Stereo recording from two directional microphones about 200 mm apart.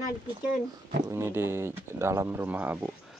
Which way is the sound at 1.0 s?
15° right (ahead or behind).